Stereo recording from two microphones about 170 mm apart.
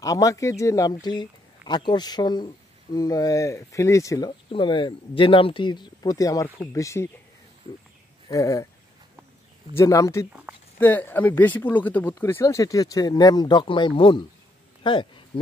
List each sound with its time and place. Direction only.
0.0 s speech: 20° left (ahead or behind)
8.3 s speech: 20° left (ahead or behind)
9.8 s speech: 20° left (ahead or behind)